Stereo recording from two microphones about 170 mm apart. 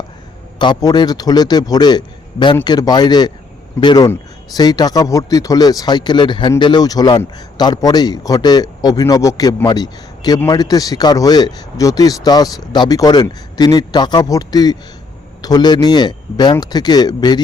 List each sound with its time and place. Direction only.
0.6 s speech: 25° left (ahead or behind)